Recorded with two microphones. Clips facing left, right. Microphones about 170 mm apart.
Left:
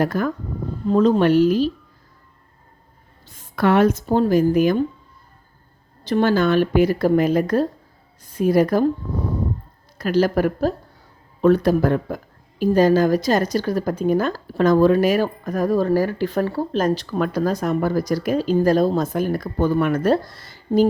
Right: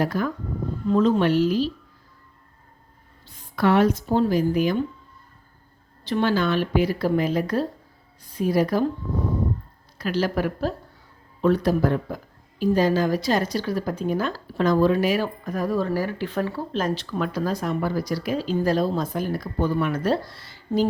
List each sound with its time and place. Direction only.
0.0 s speech: 50° left (ahead or behind)
0.9 s speech: 40° left (ahead or behind)
3.2 s a sound: 50° left (ahead or behind)
4.1 s speech: 45° left (ahead or behind)
6.1 s speech: 45° left (ahead or behind)
10.0 s speech: 45° left (ahead or behind)